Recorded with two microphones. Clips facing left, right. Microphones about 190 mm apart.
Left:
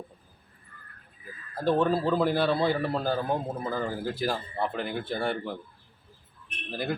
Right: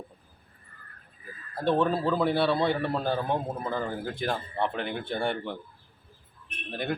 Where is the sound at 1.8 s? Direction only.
Centre (ahead or behind).